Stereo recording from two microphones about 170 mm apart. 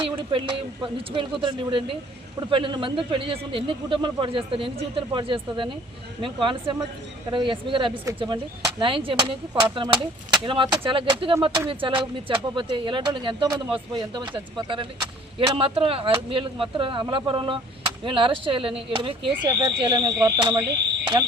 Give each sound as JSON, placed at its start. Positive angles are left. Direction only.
{"t": 0.2, "sound": "a man's voice", "side_deg": -30}